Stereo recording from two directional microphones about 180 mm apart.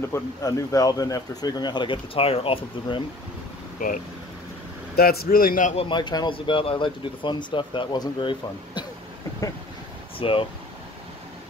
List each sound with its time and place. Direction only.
0.1 s speech: 20° left (ahead or behind)
4.9 s speech: 60° left (ahead or behind)
5.9 s speech: 25° left (ahead or behind)
10.1 s speech: 30° left (ahead or behind)